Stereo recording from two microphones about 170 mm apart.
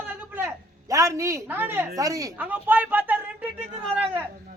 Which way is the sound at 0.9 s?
15° right (ahead or behind).